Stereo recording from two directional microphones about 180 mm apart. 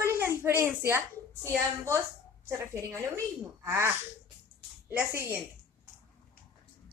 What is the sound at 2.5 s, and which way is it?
A woman's voice, 15° right (ahead or behind).